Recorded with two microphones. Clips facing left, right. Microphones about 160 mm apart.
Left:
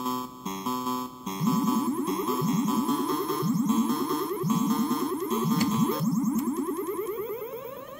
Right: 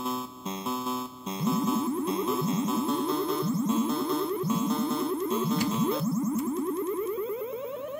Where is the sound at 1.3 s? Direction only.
30° right (ahead or behind).